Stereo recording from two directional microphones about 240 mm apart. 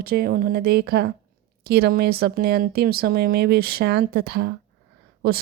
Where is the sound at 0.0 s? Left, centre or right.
Right.